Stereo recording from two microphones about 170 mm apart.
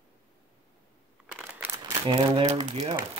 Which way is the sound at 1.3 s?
5° right (ahead or behind).